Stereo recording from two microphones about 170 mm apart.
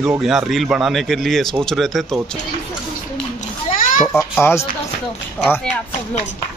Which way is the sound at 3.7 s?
50° left (ahead or behind).